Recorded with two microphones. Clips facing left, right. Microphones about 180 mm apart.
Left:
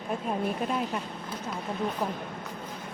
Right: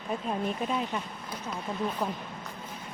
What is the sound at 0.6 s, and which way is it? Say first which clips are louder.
Speech: left 1 dB; centre (ahead or behind).